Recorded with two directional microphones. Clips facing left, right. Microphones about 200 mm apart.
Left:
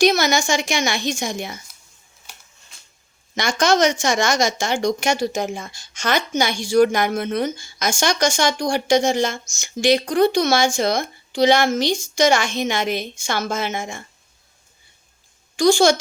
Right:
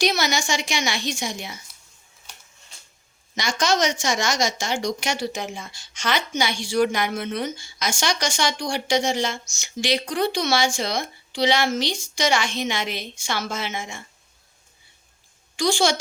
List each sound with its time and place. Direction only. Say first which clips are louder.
0.0 s speech: left 6 dB; 45° left (ahead or behind)
3.3 s speech: left 5 dB; 55° left (ahead or behind)
15.5 s speech: left 6 dB; 45° left (ahead or behind)